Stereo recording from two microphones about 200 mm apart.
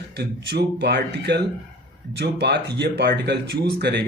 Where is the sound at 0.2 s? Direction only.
55° right (ahead or behind).